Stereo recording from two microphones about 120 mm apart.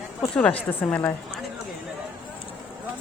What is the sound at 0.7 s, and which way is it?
Speech, 15° left (ahead or behind).